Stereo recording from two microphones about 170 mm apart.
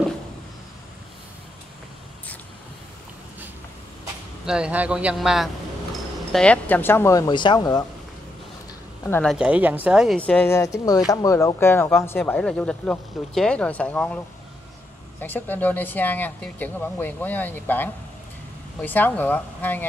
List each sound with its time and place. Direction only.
4.5 s a man's voice: 5° right (ahead or behind); by 7.8 s 25° left (ahead or behind)
9.0 s speech: 10° left (ahead or behind)
9.3 s a man's voice: 5° right (ahead or behind)
10.6 s speech: 20° left (ahead or behind)